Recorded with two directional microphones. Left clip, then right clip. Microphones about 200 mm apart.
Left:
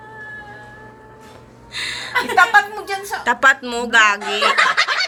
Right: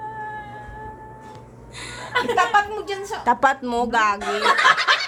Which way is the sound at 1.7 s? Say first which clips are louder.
Left 10 dB; 10° right (ahead or behind).